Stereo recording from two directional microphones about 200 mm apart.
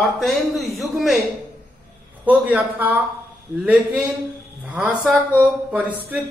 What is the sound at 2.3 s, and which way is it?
Speech, 5° right (ahead or behind).